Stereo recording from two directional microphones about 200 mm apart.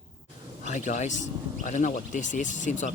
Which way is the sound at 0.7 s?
40° left (ahead or behind).